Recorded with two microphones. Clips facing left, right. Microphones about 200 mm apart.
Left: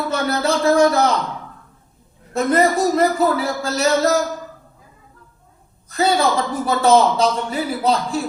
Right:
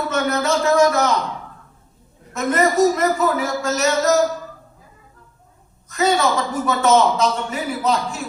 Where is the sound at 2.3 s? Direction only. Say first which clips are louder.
Even; 35° left (ahead or behind).